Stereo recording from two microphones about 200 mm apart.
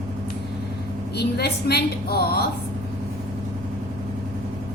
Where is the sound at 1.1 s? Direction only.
55° left (ahead or behind).